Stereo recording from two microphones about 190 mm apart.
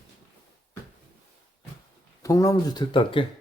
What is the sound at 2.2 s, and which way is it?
Speech, 15° left (ahead or behind).